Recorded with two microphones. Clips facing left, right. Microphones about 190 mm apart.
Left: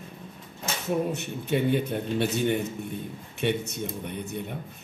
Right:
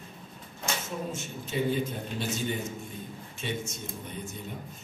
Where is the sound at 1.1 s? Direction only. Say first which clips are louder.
Left 8 dB; 65° left (ahead or behind).